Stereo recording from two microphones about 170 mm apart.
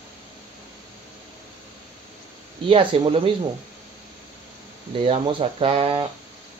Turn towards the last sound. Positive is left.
turn(degrees=-30)  # may be behind; listen again after turning